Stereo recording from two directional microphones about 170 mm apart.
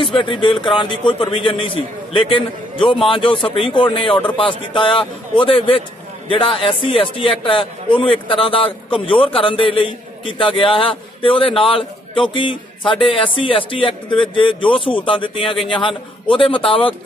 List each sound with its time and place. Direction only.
0.0 s a man's voice: 30° left (ahead or behind)
15.5 s a man's voice: centre (ahead or behind)
16.3 s a man's voice: 30° left (ahead or behind)